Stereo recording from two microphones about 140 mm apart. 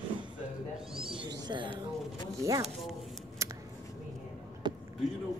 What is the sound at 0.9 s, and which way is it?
Speech, 40° right (ahead or behind).